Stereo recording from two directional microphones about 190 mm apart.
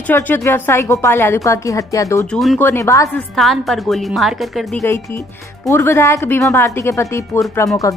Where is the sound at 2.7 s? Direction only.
15° left (ahead or behind).